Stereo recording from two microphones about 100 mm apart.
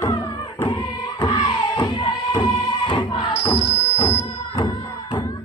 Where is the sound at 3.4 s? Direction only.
80° left.